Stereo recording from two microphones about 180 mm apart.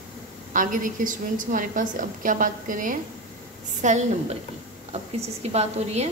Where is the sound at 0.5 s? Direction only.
45° right (ahead or behind).